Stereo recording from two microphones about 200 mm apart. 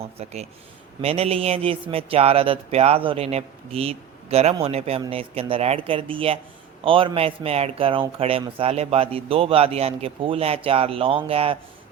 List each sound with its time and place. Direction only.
0.0 s speech: 30° right (ahead or behind)